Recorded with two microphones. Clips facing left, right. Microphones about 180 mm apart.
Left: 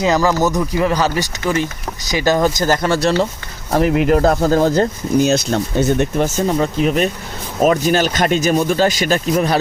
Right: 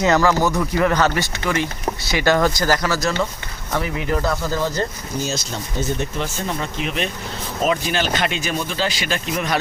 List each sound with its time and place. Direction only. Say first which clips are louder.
0.0 s speech: left 2 dB; 15° left (ahead or behind)
2.1 s speech: left 3 dB; 15° left (ahead or behind); by 3.2 s 30° left (ahead or behind)
3.8 s speech: left 10 dB; 65° left (ahead or behind)
6.2 s speech: left 9 dB; 40° left (ahead or behind)